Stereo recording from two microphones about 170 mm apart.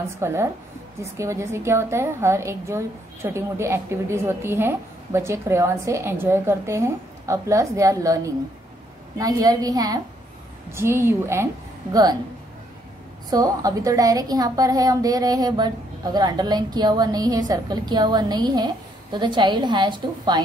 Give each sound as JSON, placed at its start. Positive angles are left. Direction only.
{"t": 0.2, "sound": "a woman's voice", "side_deg": -15}
{"t": 13.3, "sound": "a woman's voice", "side_deg": -20}